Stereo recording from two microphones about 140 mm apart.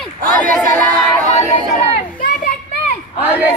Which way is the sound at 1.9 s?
80° left.